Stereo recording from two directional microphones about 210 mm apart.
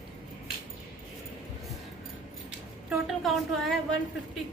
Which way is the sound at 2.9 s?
Centre (ahead or behind).